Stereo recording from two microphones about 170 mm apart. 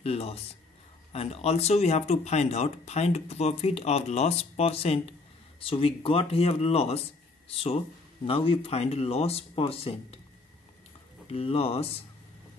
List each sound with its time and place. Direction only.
0.0 s speech: 35° left (ahead or behind)
11.2 s speech: 35° left (ahead or behind)